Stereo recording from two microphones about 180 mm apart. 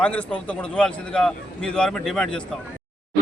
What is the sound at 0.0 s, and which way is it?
A man's voice, 5° left (ahead or behind).